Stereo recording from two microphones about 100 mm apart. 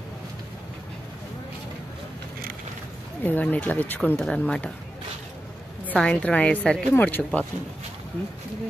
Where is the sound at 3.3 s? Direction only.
15° left (ahead or behind).